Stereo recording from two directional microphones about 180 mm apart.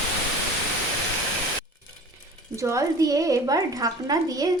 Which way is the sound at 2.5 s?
15° right (ahead or behind).